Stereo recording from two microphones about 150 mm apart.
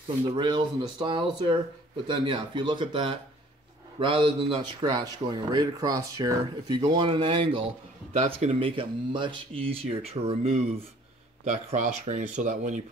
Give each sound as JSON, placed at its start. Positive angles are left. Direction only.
{"t": 0.4, "sound": "a man's voice", "side_deg": -30}
{"t": 6.9, "sound": "a man's voice", "side_deg": -35}